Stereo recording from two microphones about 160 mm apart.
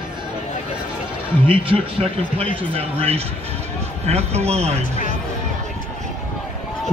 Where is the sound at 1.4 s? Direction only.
35° right (ahead or behind).